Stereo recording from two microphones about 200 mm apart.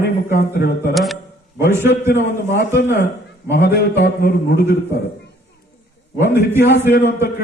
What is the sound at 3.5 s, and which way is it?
A man's voice, 55° left (ahead or behind).